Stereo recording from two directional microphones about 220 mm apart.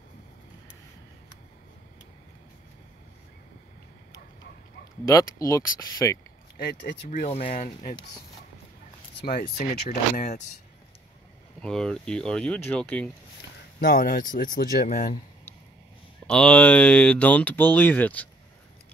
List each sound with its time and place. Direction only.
5.0 s speech: 15° left (ahead or behind)
6.5 s speech: 45° left (ahead or behind)
7.1 s speech: 30° left (ahead or behind)
9.2 s speech: 40° left (ahead or behind)
11.6 s speech: 5° left (ahead or behind)
13.7 s speech: 40° left (ahead or behind)
16.3 s speech: 5° left (ahead or behind)